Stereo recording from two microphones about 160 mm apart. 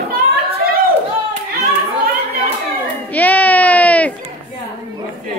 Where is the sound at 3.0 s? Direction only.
10° left (ahead or behind).